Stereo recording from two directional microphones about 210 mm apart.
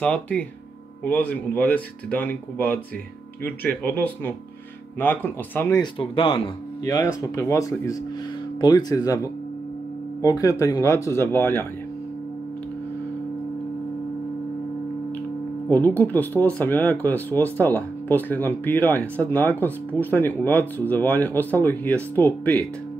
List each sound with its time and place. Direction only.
0.0 s speech: 5° left (ahead or behind)
15.7 s speech: 10° left (ahead or behind)